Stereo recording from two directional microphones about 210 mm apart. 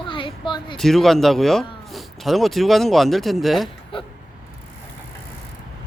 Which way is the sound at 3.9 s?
25° left (ahead or behind).